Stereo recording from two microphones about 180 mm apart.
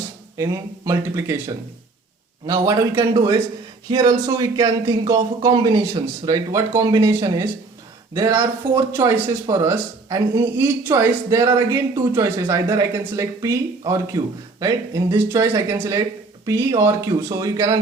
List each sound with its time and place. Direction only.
0.3 s speech: 20° right (ahead or behind)
2.5 s speech: 20° right (ahead or behind)